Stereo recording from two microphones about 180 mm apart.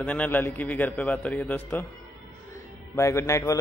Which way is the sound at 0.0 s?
10° left (ahead or behind).